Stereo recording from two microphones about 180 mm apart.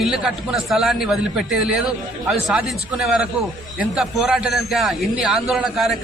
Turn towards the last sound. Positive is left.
turn(degrees=0)  # may be behind; listen again after turning